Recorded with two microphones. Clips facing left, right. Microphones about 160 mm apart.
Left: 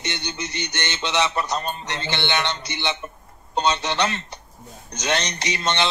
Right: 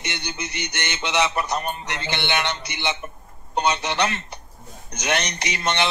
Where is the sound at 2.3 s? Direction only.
20° right (ahead or behind).